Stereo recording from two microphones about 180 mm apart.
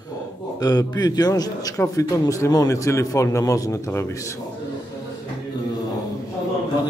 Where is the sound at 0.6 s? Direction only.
20° left (ahead or behind).